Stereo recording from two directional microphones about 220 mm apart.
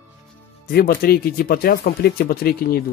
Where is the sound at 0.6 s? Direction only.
45° left (ahead or behind).